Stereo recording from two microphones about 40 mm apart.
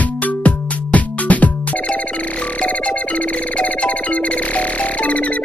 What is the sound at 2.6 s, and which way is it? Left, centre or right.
Music, left.